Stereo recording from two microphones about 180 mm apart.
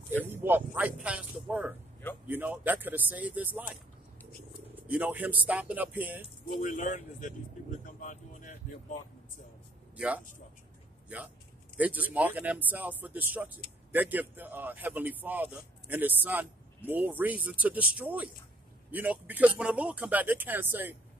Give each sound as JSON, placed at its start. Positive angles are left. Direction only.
{"t": 0.1, "sound": "a man's voice", "side_deg": -10}
{"t": 4.7, "sound": "a man's voice", "side_deg": -10}
{"t": 6.6, "sound": "speech", "side_deg": 45}
{"t": 7.8, "sound": "a sound", "side_deg": 45}
{"t": 9.9, "sound": "a man's voice", "side_deg": -5}
{"t": 11.7, "sound": "a man's voice", "side_deg": -10}